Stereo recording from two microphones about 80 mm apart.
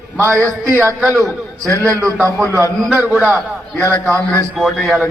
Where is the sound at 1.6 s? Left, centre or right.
Right.